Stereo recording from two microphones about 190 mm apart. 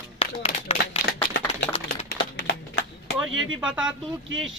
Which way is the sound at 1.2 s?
50° left (ahead or behind).